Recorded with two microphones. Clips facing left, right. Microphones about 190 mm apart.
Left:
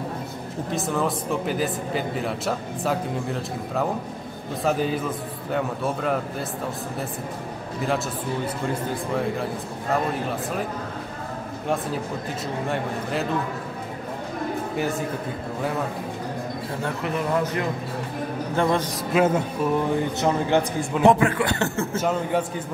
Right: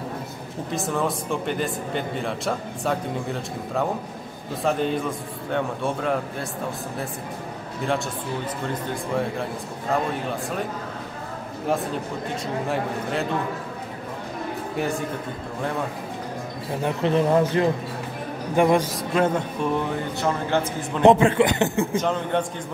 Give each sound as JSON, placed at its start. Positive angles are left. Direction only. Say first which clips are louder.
{"t": 0.7, "sound": "speech", "louder": "even", "side_deg": 0}
{"t": 9.1, "sound": "speech", "louder": "even", "side_deg": 0}
{"t": 11.6, "sound": "speech", "louder": "right 1 dB", "side_deg": 0}
{"t": 14.8, "sound": "speech", "louder": "right 1 dB", "side_deg": 0}
{"t": 16.8, "sound": "speech", "louder": "right 6 dB", "side_deg": -30}
{"t": 18.6, "sound": "a man's voice", "louder": "right 4 dB", "side_deg": -15}
{"t": 19.1, "sound": "speech", "louder": "left 2 dB", "side_deg": 5}
{"t": 20.2, "sound": "a man's voice", "louder": "left 1 dB", "side_deg": 15}
{"t": 21.0, "sound": "speech", "louder": "right 3 dB", "side_deg": -25}
{"t": 22.0, "sound": "a man's voice", "louder": "even", "side_deg": 5}